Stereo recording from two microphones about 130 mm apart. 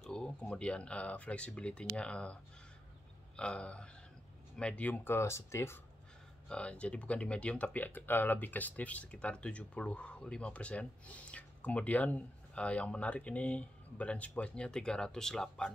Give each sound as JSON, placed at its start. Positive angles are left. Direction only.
{"t": 0.0, "sound": "speech", "side_deg": 5}
{"t": 3.3, "sound": "speech", "side_deg": 10}
{"t": 6.5, "sound": "speech", "side_deg": 10}